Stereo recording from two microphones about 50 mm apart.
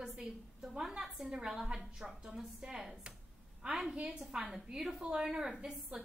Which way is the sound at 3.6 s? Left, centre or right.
Right.